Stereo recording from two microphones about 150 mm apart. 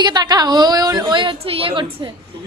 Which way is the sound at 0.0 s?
30° right (ahead or behind).